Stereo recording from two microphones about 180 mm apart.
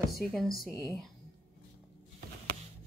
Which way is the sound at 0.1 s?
Centre (ahead or behind).